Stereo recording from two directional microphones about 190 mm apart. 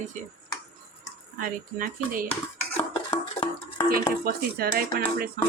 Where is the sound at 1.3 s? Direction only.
45° right (ahead or behind).